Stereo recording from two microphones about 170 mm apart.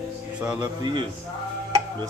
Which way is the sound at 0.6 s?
25° right (ahead or behind).